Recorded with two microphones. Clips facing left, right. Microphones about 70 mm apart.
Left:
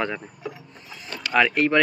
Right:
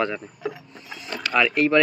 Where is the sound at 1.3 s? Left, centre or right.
Left.